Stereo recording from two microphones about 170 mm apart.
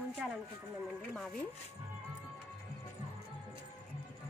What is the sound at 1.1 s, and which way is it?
Speech, centre (ahead or behind).